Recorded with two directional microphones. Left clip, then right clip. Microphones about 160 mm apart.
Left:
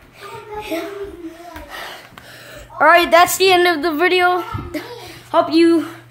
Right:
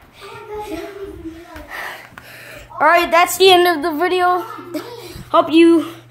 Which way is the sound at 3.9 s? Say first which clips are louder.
Left 1 dB; 15° left (ahead or behind).